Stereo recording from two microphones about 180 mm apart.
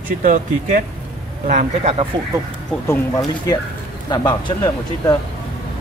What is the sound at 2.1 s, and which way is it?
Speech, 25° right (ahead or behind).